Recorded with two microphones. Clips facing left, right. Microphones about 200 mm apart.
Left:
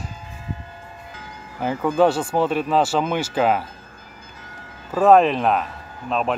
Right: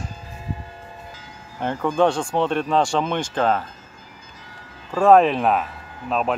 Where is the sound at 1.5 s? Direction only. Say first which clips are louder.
Left 2 dB; 5° left (ahead or behind).